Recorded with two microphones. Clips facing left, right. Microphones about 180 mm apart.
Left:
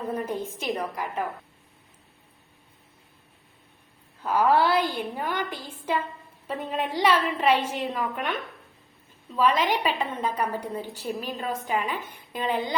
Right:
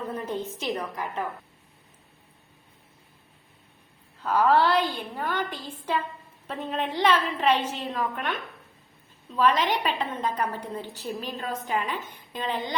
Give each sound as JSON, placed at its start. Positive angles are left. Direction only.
{"t": 0.1, "sound": "a woman's voice", "side_deg": 10}
{"t": 4.2, "sound": "a woman's voice", "side_deg": 10}